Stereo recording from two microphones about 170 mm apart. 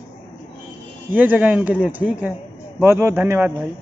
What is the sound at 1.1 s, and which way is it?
Speech, 10° right (ahead or behind).